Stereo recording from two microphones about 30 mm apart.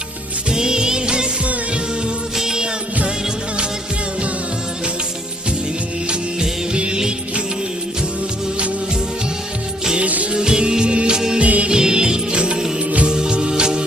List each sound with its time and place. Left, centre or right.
0.5 s music: right
2.3 s music: centre
6.7 s music: right
10.0 s music: right
10.3 s music: right
11.3 s music: right
11.7 s music: right